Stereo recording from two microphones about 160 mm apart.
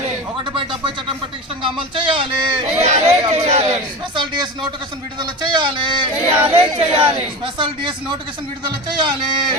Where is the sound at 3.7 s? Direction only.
30° right (ahead or behind).